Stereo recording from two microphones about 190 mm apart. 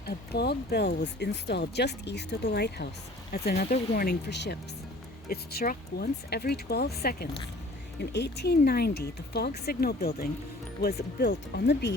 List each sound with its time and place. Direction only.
0.0 s speech: 60° left (ahead or behind)